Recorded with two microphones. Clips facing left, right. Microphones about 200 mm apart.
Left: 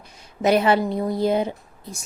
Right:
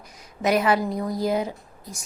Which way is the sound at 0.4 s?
30° left (ahead or behind).